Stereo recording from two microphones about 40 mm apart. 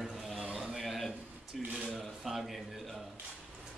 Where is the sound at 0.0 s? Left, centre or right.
Centre.